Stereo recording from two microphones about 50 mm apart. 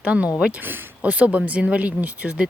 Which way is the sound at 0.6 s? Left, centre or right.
Right.